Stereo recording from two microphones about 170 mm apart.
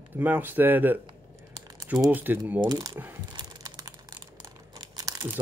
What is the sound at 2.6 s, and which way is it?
Speech, 20° right (ahead or behind).